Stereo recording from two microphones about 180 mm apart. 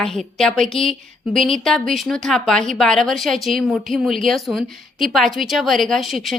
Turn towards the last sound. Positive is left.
turn(degrees=0)  # may be behind; listen again after turning